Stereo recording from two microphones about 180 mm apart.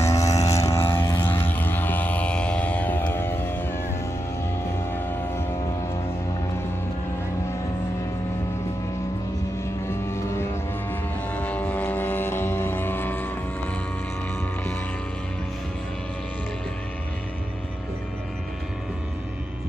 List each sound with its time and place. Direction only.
0.0 s vehicle: 15° left (ahead or behind)
9.8 s vehicle: 15° left (ahead or behind)